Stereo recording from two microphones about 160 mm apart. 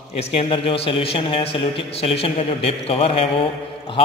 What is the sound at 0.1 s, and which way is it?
A man's voice, 40° left (ahead or behind).